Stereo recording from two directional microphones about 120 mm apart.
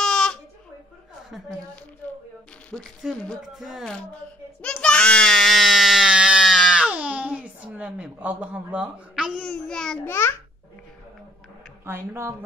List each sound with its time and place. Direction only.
0.0 s a sound: 5° left (ahead or behind)
3.0 s speech: centre (ahead or behind)
4.6 s screaming: 10° left (ahead or behind)
10.0 s a child's voice: 20° left (ahead or behind)
11.8 s speech: 20° right (ahead or behind)